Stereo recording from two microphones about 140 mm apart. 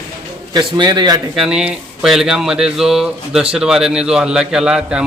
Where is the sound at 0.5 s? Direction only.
30° right (ahead or behind).